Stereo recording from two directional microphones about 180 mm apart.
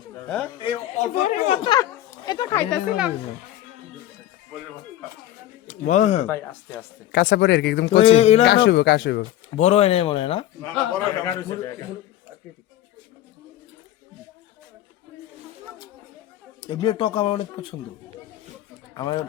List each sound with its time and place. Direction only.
1.2 s speech: 40° left (ahead or behind)
1.6 s a sound: 20° left (ahead or behind)
2.6 s speech: 5° left (ahead or behind)
5.6 s speech: 40° left (ahead or behind)
6.2 s a man's voice: 15° left (ahead or behind)
7.1 s speech: 65° left (ahead or behind)
7.9 s speech: 30° left (ahead or behind)
8.4 s speech: 80° left
9.6 s speech: 35° left (ahead or behind)
10.6 s a man's voice: 10° left (ahead or behind)
16.6 s speech: 25° left (ahead or behind)
18.9 s speech: 25° left (ahead or behind)